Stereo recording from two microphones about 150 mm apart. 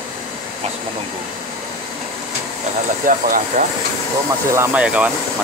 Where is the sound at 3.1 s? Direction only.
60° right (ahead or behind).